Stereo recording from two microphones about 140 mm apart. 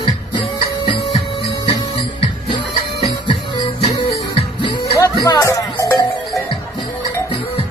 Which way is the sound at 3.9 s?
35° left (ahead or behind).